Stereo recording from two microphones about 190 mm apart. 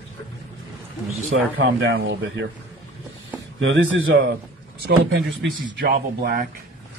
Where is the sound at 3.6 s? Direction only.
85° right.